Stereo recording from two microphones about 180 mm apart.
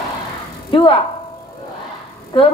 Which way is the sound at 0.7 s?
30° left (ahead or behind).